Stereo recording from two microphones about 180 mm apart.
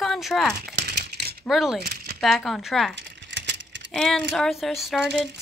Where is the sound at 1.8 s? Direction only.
60° right (ahead or behind).